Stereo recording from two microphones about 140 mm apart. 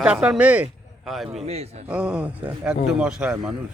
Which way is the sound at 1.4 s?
50° right (ahead or behind).